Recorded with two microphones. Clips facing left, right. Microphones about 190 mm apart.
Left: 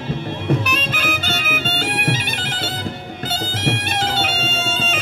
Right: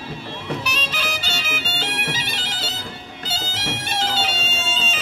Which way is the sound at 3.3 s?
55° left (ahead or behind).